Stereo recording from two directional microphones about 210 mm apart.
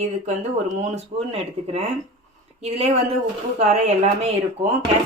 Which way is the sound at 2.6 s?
30° right (ahead or behind).